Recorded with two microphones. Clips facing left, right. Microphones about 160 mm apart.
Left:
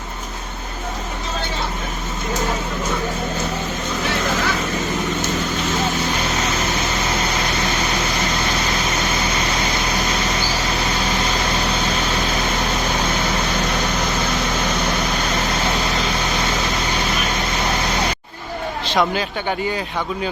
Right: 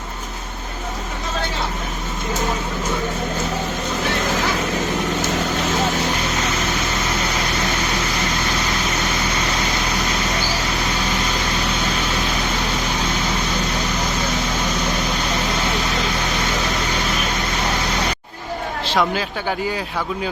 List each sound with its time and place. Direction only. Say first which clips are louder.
18.9 s speech: left 1 dB; centre (ahead or behind)